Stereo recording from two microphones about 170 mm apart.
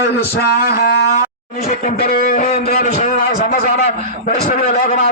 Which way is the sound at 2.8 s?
40° left (ahead or behind).